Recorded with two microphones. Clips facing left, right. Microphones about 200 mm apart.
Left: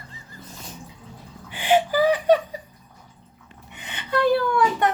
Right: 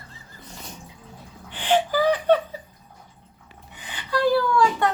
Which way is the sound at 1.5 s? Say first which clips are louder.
Left 2 dB; 10° left (ahead or behind).